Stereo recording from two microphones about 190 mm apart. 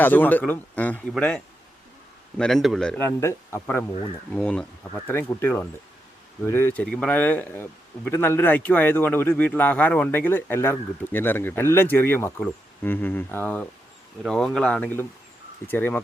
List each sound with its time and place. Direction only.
0.0 s speech: 10° left (ahead or behind)
2.4 s speech: centre (ahead or behind)